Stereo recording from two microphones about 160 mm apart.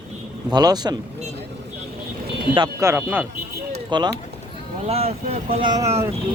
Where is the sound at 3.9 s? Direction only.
30° right (ahead or behind).